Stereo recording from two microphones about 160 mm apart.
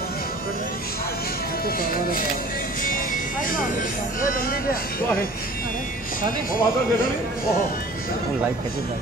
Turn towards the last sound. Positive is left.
turn(degrees=65)  # may be behind; listen again after turning